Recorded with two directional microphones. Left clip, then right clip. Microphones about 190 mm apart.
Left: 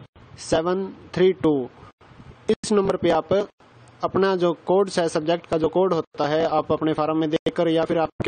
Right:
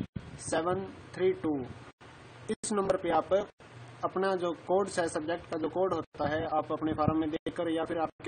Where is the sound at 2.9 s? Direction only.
45° left (ahead or behind).